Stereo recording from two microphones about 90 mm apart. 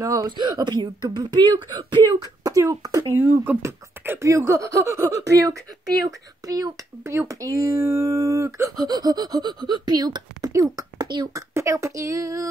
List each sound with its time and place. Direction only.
0.0 s speech: 35° right (ahead or behind)
0.4 s speech: 55° right (ahead or behind)
2.4 s speech: 40° right (ahead or behind)
3.2 s speech: 25° right (ahead or behind); by 10.5 s 50° right (ahead or behind)
10.5 s a sound: 40° right (ahead or behind)
11.3 s speech: 35° right (ahead or behind)